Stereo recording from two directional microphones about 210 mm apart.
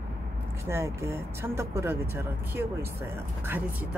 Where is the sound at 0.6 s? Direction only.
10° right (ahead or behind).